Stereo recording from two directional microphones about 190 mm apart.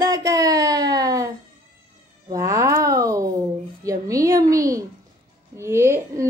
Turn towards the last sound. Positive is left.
turn(degrees=-15)  # may be behind; listen again after turning